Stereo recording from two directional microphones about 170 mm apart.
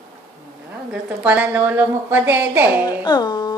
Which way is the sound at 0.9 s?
10° right (ahead or behind).